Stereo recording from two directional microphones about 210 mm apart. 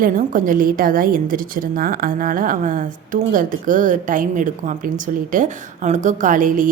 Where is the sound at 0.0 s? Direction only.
40° right (ahead or behind).